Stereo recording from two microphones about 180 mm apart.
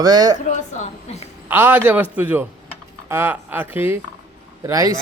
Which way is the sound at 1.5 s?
10° right (ahead or behind).